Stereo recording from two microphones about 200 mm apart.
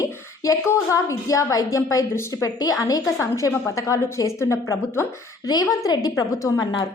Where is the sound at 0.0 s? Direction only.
15° left (ahead or behind).